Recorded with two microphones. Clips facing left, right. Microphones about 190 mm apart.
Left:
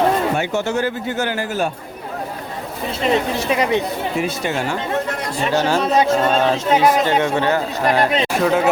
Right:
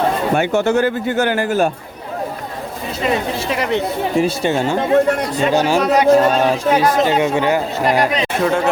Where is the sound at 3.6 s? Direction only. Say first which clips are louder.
Even; 15° left (ahead or behind).